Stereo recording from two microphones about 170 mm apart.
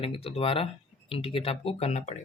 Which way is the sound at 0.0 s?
35° left (ahead or behind).